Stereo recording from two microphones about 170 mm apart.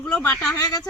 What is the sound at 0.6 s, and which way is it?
Speech, 25° left (ahead or behind).